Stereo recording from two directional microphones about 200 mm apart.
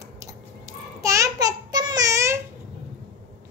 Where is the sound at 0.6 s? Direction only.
15° right (ahead or behind).